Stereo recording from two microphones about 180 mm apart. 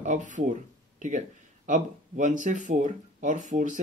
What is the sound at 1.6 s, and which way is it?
Speech, 45° right (ahead or behind).